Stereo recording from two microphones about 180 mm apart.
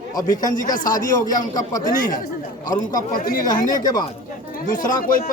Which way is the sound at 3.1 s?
50° left (ahead or behind).